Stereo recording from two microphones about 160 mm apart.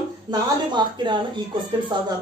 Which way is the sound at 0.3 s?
30° right (ahead or behind).